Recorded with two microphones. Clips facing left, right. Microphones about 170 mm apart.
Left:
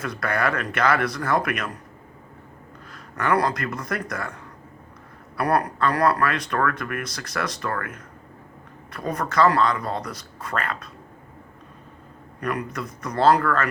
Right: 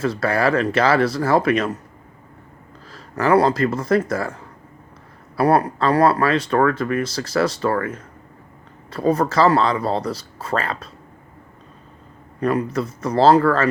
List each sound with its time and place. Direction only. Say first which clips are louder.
0.0 s speech: right 6 dB; 30° right (ahead or behind)
2.9 s speech: right 6 dB; 30° right (ahead or behind)
5.4 s speech: right 5 dB; 30° right (ahead or behind)
12.4 s speech: right 8 dB; 30° right (ahead or behind)